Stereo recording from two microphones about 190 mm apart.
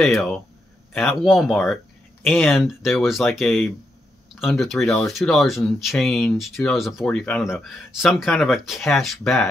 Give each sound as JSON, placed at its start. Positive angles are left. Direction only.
{"t": 0.0, "sound": "speech", "side_deg": 0}